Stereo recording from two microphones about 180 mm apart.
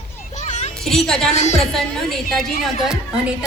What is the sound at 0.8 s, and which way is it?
Speech, 5° left (ahead or behind).